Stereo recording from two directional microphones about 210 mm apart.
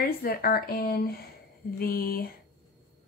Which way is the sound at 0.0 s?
45° left (ahead or behind).